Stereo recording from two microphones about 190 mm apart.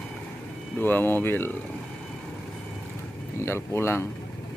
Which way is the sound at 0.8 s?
10° left (ahead or behind).